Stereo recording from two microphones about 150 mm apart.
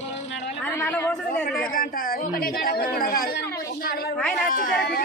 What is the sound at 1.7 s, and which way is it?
A woman's voice, 75° left (ahead or behind).